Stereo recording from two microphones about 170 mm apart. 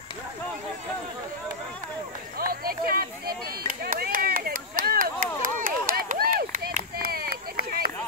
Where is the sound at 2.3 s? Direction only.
60° right (ahead or behind).